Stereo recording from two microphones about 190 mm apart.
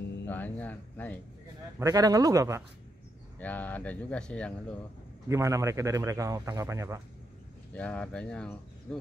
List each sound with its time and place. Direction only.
0.3 s speech: 10° left (ahead or behind)
1.8 s a man's voice: 20° right (ahead or behind)
3.3 s speech: 10° left (ahead or behind)
5.3 s a man's voice: 15° right (ahead or behind)
7.7 s speech: 5° left (ahead or behind)